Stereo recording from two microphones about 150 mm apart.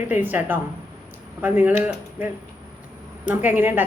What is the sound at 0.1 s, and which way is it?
A woman's voice, 10° right (ahead or behind).